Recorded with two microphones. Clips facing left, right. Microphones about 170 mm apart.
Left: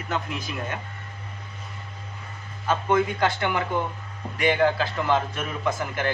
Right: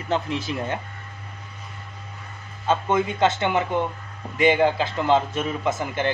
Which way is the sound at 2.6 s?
25° right (ahead or behind).